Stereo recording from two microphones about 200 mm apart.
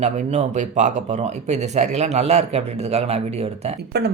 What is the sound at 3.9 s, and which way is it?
Speech, 55° right (ahead or behind).